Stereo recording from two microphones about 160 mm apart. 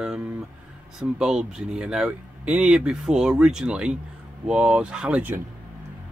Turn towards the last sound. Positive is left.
turn(degrees=-10)  # may be behind; listen again after turning